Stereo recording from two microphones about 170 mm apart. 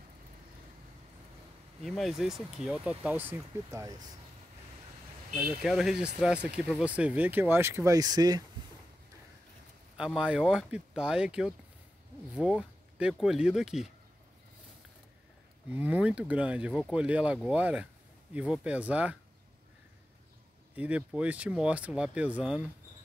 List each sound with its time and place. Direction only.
1.8 s speech: centre (ahead or behind); by 3.9 s 15° right (ahead or behind)
5.6 s speech: centre (ahead or behind); by 8.5 s 20° right (ahead or behind)
9.9 s speech: 5° right (ahead or behind)
15.7 s speech: 10° right (ahead or behind)
20.7 s speech: 10° right (ahead or behind)